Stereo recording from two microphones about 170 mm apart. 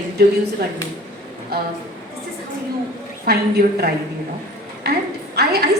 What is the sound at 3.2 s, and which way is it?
A woman's voice, 65° right (ahead or behind).